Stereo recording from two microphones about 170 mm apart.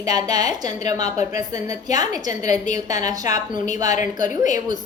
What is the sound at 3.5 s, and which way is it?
Speech, 45° left (ahead or behind).